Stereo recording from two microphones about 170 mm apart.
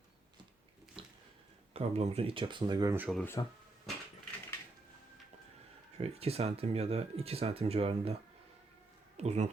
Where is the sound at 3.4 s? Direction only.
25° left (ahead or behind).